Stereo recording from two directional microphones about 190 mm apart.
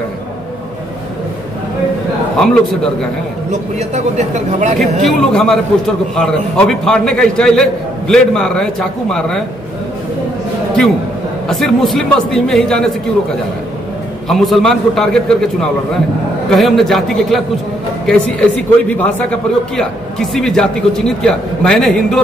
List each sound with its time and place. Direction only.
2.3 s a man's voice: 5° left (ahead or behind)
3.9 s speech: 40° right (ahead or behind)
5.0 s a man's voice: centre (ahead or behind)
11.4 s a man's voice: centre (ahead or behind)
14.3 s a man's voice: centre (ahead or behind)